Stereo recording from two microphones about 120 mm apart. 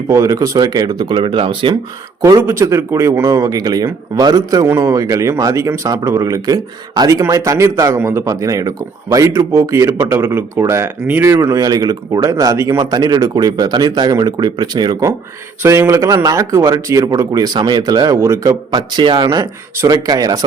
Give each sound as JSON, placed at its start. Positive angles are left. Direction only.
{"t": 0.1, "sound": "speech", "side_deg": -25}
{"t": 2.4, "sound": "speech", "side_deg": -20}
{"t": 11.3, "sound": "speech", "side_deg": -30}
{"t": 15.6, "sound": "speech", "side_deg": -25}
{"t": 18.7, "sound": "speech", "side_deg": -40}